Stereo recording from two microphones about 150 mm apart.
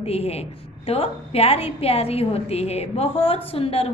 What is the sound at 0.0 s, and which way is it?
A woman's voice, 40° left (ahead or behind).